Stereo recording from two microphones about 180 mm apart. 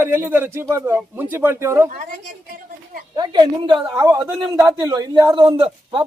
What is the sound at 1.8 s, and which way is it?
Speech, 45° right (ahead or behind).